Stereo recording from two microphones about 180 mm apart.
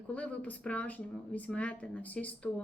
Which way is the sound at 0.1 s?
10° left (ahead or behind).